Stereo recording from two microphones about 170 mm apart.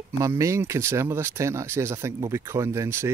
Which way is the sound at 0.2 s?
15° right (ahead or behind).